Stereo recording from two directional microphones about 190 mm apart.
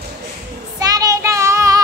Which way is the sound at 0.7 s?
20° right (ahead or behind).